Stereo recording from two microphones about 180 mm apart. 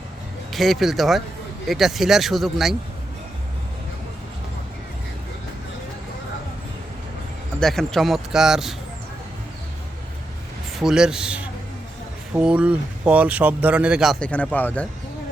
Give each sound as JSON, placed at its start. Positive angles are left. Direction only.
{"t": 0.5, "sound": "speech", "side_deg": 0}
{"t": 7.6, "sound": "speech", "side_deg": 0}
{"t": 10.8, "sound": "speech", "side_deg": -5}